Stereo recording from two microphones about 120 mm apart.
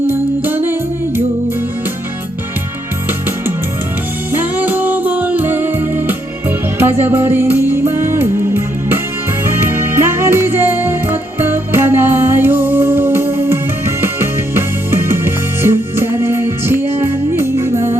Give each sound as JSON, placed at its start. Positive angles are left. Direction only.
{"t": 0.1, "sound": "music", "side_deg": -15}
{"t": 4.3, "sound": "music", "side_deg": -15}